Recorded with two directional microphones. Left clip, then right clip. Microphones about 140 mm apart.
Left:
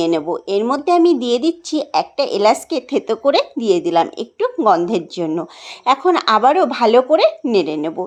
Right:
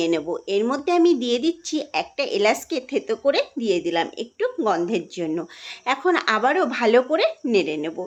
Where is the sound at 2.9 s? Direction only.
40° left (ahead or behind).